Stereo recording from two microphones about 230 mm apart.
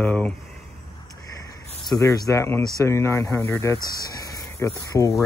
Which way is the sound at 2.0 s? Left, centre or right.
Centre.